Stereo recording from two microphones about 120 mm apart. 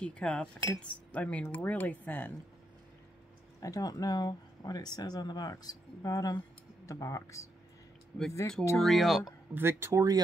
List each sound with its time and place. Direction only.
0.0 s speech: 10° left (ahead or behind)
3.6 s speech: 30° left (ahead or behind)
8.7 s speech: centre (ahead or behind)
9.5 s speech: 20° right (ahead or behind)